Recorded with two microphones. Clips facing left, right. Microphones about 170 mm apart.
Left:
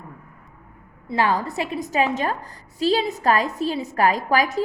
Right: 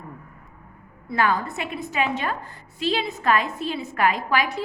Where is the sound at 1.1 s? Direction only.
30° left (ahead or behind).